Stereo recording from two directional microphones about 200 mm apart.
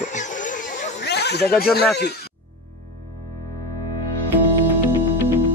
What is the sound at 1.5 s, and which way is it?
Speech, 50° left (ahead or behind).